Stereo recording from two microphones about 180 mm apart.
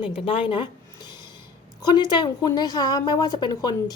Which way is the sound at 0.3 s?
30° left (ahead or behind).